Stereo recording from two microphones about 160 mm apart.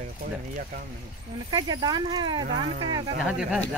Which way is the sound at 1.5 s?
25° right (ahead or behind).